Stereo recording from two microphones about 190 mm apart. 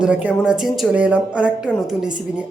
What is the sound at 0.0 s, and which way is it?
A woman's voice, 5° right (ahead or behind).